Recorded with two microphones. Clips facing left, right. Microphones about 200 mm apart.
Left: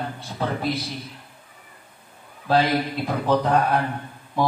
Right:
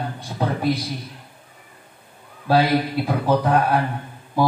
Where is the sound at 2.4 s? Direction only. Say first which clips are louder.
Right 2 dB; 10° right (ahead or behind).